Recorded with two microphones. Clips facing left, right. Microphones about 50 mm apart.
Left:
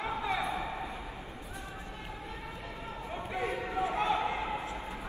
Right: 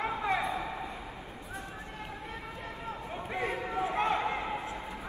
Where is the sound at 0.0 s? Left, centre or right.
Right.